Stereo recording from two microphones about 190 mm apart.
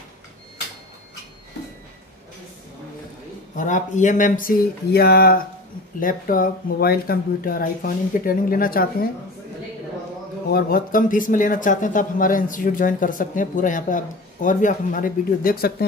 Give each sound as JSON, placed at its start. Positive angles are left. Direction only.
{"t": 3.5, "sound": "speech", "side_deg": 40}
{"t": 10.5, "sound": "speech", "side_deg": 50}